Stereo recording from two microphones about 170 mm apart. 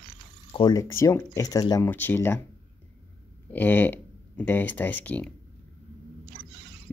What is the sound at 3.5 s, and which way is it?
Speech, 10° left (ahead or behind).